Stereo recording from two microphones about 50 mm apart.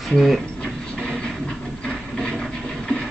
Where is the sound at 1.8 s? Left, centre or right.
Centre.